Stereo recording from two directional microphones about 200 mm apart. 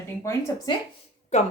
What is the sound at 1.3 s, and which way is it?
Speech, 35° left (ahead or behind).